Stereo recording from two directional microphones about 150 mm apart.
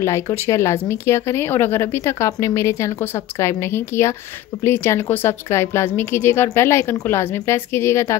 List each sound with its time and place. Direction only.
0.0 s speech: 20° left (ahead or behind)